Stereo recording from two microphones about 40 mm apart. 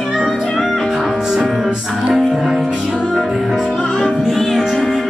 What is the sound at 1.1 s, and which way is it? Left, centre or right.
Music, centre.